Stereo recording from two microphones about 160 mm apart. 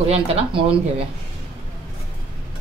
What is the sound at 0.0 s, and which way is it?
Speech, 40° right (ahead or behind).